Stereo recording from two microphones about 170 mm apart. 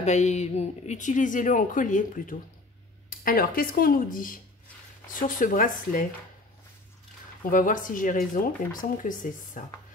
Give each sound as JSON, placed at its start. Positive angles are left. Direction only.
{"t": 0.0, "sound": "speech", "side_deg": 40}
{"t": 7.4, "sound": "speech", "side_deg": 50}